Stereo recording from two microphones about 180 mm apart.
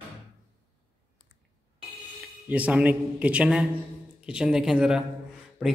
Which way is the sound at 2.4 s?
5° right (ahead or behind).